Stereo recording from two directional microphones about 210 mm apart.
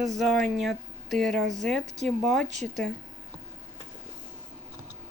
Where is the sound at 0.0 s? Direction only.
Centre (ahead or behind).